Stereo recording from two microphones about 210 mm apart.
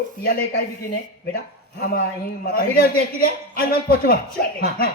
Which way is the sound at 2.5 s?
45° left (ahead or behind).